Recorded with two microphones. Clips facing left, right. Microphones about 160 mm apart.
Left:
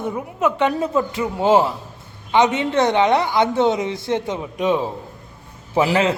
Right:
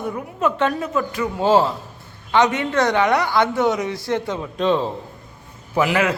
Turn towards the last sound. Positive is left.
turn(degrees=30)  # may be behind; listen again after turning